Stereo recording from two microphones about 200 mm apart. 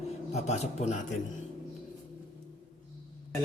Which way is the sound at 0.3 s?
30° left (ahead or behind).